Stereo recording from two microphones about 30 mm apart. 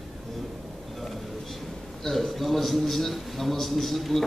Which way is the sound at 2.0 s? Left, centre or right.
Centre.